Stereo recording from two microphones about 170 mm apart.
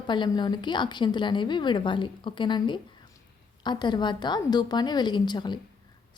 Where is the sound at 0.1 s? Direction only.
25° left (ahead or behind).